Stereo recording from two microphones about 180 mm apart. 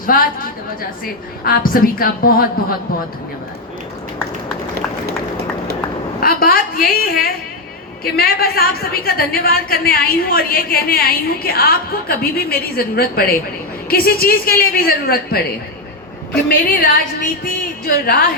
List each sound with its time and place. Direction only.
0.0 s a woman's voice: 50° left (ahead or behind)
1.5 s a woman's voice: 55° left (ahead or behind)
6.1 s a woman's voice: 55° left (ahead or behind)
16.5 s a woman's voice: 55° left (ahead or behind)